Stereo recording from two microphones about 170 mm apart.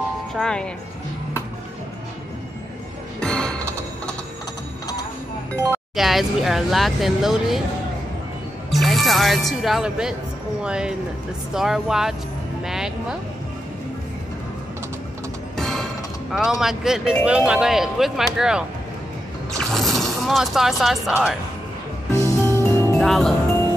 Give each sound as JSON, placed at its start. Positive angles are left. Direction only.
{"t": 0.3, "sound": "speech", "side_deg": 5}
{"t": 3.2, "sound": "music", "side_deg": 5}
{"t": 5.5, "sound": "speech", "side_deg": 0}
{"t": 8.7, "sound": "speech", "side_deg": 0}
{"t": 12.6, "sound": "music", "side_deg": -5}
{"t": 15.5, "sound": "music", "side_deg": 0}
{"t": 17.2, "sound": "speech", "side_deg": -5}
{"t": 19.6, "sound": "speech", "side_deg": 0}
{"t": 22.1, "sound": "music", "side_deg": 15}
{"t": 22.9, "sound": "music", "side_deg": 0}